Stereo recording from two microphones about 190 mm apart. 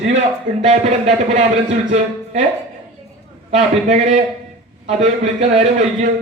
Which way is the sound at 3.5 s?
35° right (ahead or behind).